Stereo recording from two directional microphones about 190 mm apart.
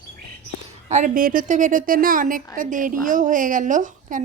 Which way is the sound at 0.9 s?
40° right (ahead or behind).